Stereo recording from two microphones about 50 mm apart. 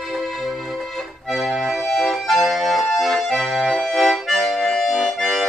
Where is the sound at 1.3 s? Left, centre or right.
Centre.